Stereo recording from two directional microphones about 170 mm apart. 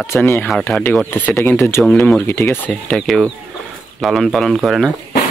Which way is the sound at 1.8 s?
5° left (ahead or behind).